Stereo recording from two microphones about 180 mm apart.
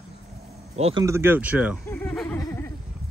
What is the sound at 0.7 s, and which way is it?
Speech, 35° right (ahead or behind).